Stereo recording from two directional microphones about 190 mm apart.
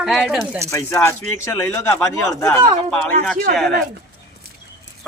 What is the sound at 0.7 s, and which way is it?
A woman's voice, 15° left (ahead or behind).